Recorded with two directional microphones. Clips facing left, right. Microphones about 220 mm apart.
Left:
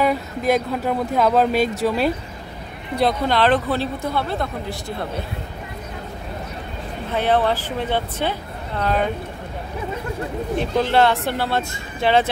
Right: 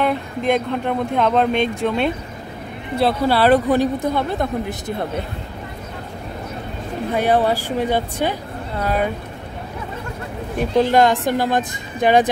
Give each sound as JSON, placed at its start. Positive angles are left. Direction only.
{"t": 0.0, "sound": "speech", "side_deg": 5}
{"t": 7.2, "sound": "speech", "side_deg": -10}
{"t": 10.6, "sound": "speech", "side_deg": -15}